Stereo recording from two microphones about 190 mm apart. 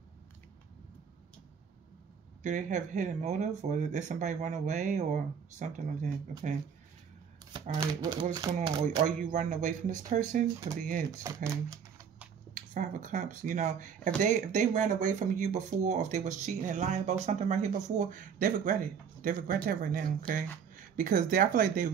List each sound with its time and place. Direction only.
2.4 s speech: 40° right (ahead or behind)
8.0 s speech: 20° right (ahead or behind)
9.0 s speech: 40° right (ahead or behind)
11.1 s speech: 15° right (ahead or behind)
12.7 s speech: 45° right (ahead or behind)